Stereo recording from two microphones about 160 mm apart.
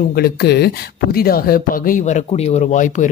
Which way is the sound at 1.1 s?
70° left (ahead or behind).